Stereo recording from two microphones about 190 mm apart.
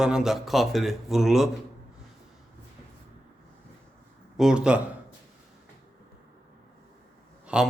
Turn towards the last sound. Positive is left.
turn(degrees=-5)  # may be behind; listen again after turning